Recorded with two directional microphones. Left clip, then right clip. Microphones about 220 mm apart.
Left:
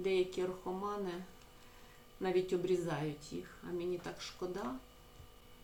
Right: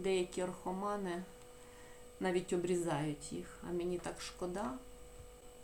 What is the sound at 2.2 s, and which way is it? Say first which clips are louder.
Speech: left 2 dB; 35° right (ahead or behind).